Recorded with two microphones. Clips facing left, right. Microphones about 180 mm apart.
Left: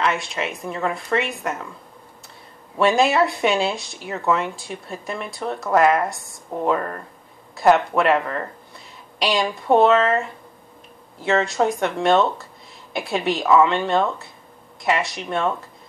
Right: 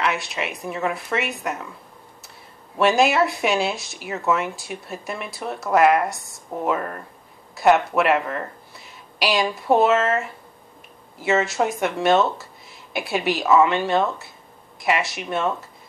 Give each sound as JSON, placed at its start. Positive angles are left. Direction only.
{"t": 0.0, "sound": "speech", "side_deg": -5}
{"t": 2.8, "sound": "speech", "side_deg": 0}